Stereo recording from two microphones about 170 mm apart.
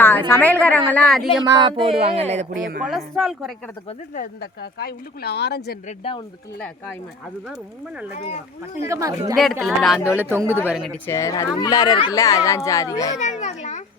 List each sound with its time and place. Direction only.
0.0 s a woman's voice: 15° left (ahead or behind)
1.5 s speech: 25° right (ahead or behind)
2.5 s a woman's voice: 90° right
2.8 s a woman's voice: centre (ahead or behind)
4.1 s speech: 65° left (ahead or behind)
6.0 s speech: 30° left (ahead or behind)
8.9 s speech: 20° right (ahead or behind)
9.3 s a woman's voice: centre (ahead or behind)
11.0 s speech: 15° left (ahead or behind)
13.1 s a child's voice: 45° left (ahead or behind)